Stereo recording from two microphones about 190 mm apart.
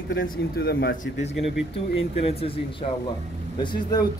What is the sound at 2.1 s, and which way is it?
Speech, 30° left (ahead or behind).